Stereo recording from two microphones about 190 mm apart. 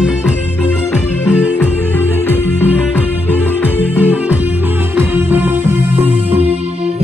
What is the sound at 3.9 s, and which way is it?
Music, 10° right (ahead or behind).